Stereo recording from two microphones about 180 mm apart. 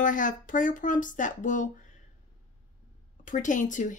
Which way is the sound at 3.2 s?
45° left (ahead or behind).